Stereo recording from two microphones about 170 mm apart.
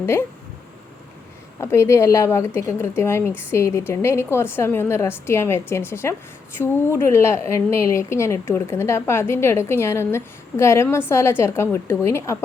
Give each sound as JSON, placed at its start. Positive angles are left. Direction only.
{"t": 0.0, "sound": "a woman's voice", "side_deg": 15}
{"t": 1.5, "sound": "a woman's voice", "side_deg": 15}